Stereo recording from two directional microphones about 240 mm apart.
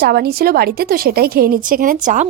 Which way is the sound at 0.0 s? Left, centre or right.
Right.